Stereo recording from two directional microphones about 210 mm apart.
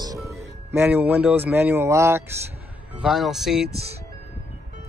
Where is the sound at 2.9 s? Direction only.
Centre (ahead or behind).